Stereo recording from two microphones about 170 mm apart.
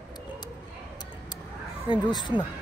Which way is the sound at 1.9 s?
25° left (ahead or behind).